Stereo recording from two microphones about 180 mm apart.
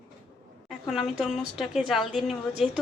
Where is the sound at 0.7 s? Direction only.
Centre (ahead or behind).